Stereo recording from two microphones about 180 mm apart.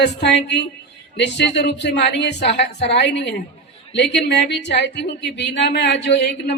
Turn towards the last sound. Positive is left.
turn(degrees=70)  # may be behind; listen again after turning